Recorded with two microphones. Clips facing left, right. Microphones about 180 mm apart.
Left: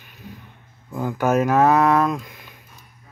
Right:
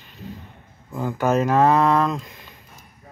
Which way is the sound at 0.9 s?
10° left (ahead or behind).